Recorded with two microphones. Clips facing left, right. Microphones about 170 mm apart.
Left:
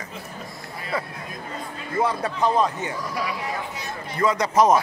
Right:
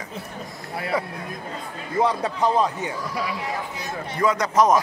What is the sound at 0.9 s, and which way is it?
A man's voice, 15° right (ahead or behind).